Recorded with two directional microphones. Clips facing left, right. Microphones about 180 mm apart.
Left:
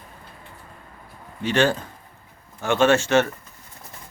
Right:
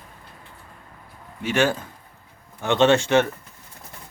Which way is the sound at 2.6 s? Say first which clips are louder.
Right 1 dB; 20° right (ahead or behind).